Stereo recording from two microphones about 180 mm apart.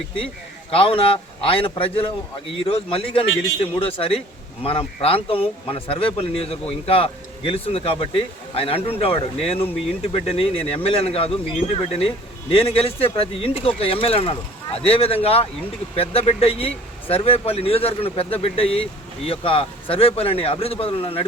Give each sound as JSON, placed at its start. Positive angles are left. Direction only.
{"t": 0.7, "sound": "a man's voice", "side_deg": 30}